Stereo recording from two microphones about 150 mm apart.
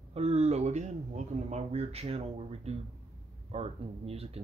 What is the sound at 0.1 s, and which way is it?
Speech, 45° right (ahead or behind).